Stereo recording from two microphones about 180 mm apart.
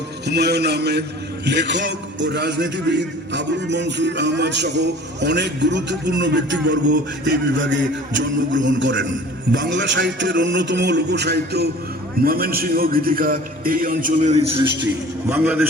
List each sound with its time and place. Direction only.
0.3 s a man's voice: 65° right (ahead or behind); by 14.5 s 40° right (ahead or behind)
15.3 s a man's voice: 10° right (ahead or behind)